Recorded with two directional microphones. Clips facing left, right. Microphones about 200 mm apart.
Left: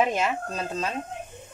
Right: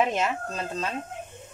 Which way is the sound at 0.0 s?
5° left (ahead or behind).